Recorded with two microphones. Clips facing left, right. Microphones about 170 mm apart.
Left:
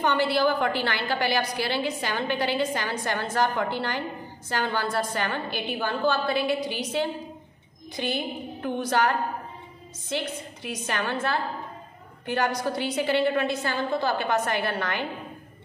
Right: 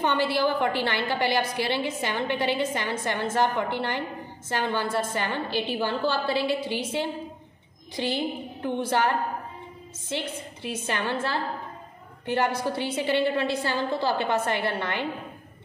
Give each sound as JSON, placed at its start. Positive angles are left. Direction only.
{"t": 0.0, "sound": "a woman's voice", "side_deg": -25}
{"t": 12.3, "sound": "a woman's voice", "side_deg": -25}